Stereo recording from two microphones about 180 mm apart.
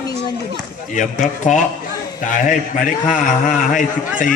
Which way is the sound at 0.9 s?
40° left (ahead or behind).